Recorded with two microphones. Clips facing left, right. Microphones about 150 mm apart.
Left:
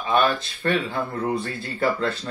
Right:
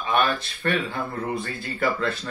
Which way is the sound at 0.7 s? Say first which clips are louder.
Left 2 dB; 35° left (ahead or behind).